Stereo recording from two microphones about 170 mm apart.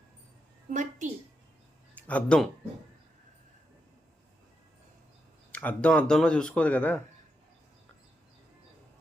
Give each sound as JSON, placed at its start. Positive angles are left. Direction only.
{"t": 0.7, "sound": "a woman's voice", "side_deg": -45}
{"t": 2.0, "sound": "speech", "side_deg": 5}
{"t": 5.5, "sound": "speech", "side_deg": 10}